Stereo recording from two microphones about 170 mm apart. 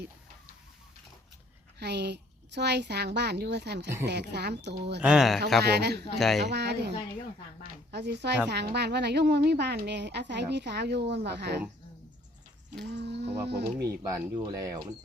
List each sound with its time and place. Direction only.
1.8 s a woman's voice: 80° right
5.0 s speech: 5° right (ahead or behind)
5.6 s a man's voice: 75° right (ahead or behind)
6.1 s speech: centre (ahead or behind)
6.4 s a man's voice: 75° right (ahead or behind)
12.9 s speech: 90° right
13.9 s speech: 20° right (ahead or behind)